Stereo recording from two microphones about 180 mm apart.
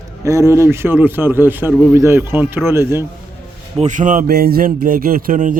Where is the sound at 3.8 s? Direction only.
45° right (ahead or behind).